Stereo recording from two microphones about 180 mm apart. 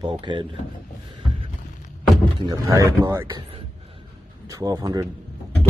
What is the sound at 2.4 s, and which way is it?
Speech, 20° right (ahead or behind).